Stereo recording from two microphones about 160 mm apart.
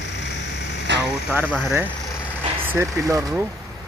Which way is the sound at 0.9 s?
90° right.